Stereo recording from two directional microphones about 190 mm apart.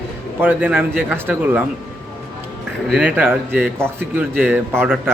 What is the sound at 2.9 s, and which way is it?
A man's voice, 5° right (ahead or behind).